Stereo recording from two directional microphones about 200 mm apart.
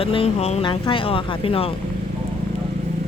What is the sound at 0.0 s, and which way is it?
Speech, 30° left (ahead or behind).